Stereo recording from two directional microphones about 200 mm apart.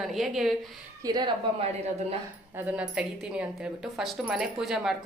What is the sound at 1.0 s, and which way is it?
A woman's voice, 20° right (ahead or behind).